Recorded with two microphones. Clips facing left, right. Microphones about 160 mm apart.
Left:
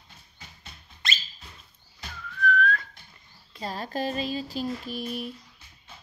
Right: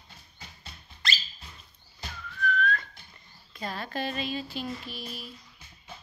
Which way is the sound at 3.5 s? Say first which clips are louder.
Left 2 dB; 35° left (ahead or behind).